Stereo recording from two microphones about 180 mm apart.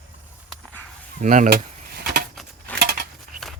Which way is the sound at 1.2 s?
45° right (ahead or behind).